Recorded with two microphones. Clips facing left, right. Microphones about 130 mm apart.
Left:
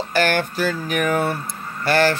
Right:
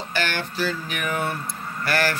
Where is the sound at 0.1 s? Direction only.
50° left (ahead or behind).